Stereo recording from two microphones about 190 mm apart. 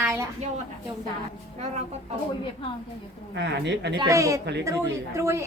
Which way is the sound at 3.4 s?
65° right (ahead or behind).